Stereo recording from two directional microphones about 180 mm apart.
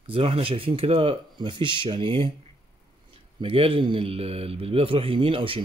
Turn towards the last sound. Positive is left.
turn(degrees=-30)  # may be behind; listen again after turning